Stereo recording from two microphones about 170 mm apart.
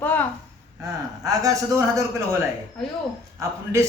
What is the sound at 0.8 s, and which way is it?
Speech, 20° right (ahead or behind).